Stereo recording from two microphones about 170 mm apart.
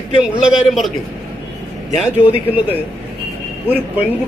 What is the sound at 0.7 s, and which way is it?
Speech, centre (ahead or behind).